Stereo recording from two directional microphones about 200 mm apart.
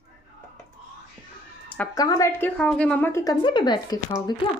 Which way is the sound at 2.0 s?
15° left (ahead or behind).